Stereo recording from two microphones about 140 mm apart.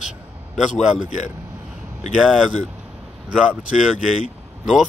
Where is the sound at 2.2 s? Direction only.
Centre (ahead or behind).